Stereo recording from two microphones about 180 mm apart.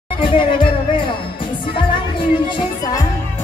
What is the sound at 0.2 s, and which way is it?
Music, 30° left (ahead or behind).